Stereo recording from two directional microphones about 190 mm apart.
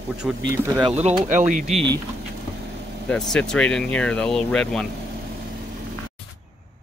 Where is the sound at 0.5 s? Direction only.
10° right (ahead or behind).